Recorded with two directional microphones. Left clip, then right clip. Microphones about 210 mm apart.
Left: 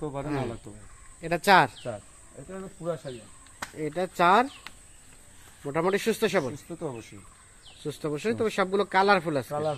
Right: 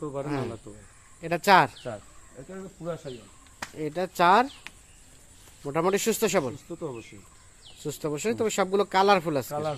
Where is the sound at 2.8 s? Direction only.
35° left (ahead or behind).